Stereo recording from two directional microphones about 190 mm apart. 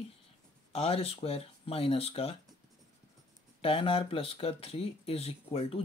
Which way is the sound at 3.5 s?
30° left (ahead or behind).